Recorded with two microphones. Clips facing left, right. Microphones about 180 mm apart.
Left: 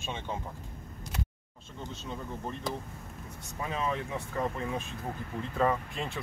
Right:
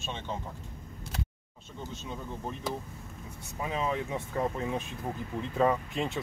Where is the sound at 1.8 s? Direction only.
5° right (ahead or behind).